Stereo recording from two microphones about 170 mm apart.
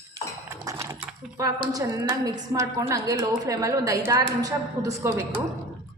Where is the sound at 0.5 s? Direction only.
15° right (ahead or behind).